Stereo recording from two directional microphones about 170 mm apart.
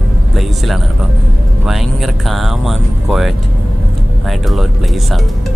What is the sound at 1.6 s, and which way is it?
Music, centre (ahead or behind).